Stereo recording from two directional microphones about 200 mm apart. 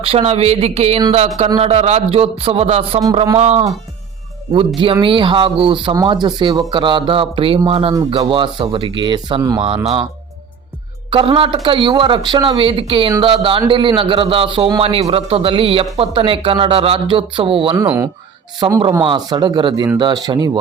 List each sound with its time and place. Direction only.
0.0 s speech: 30° right (ahead or behind)
4.8 s speech: 25° right (ahead or behind)
11.1 s speech: 25° right (ahead or behind)
17.7 s speech: 10° right (ahead or behind)
18.6 s speech: 25° right (ahead or behind)